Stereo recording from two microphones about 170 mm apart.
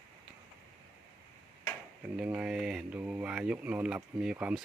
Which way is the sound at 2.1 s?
5° right (ahead or behind).